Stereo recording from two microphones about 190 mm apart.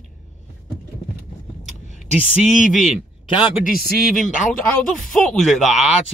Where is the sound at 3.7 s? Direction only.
45° left (ahead or behind).